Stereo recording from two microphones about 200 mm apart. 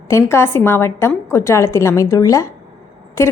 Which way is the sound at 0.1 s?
15° left (ahead or behind).